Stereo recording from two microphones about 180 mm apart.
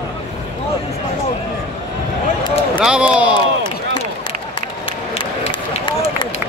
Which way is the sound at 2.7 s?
5° right (ahead or behind).